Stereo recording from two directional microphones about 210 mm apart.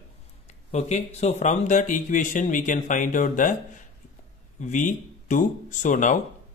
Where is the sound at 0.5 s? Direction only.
30° left (ahead or behind).